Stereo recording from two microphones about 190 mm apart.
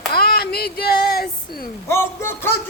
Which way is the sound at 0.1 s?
55° left (ahead or behind).